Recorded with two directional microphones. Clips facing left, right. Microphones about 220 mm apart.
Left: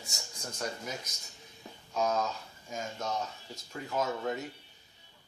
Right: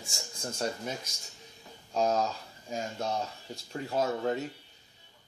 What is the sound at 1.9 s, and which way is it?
Speech, 35° right (ahead or behind).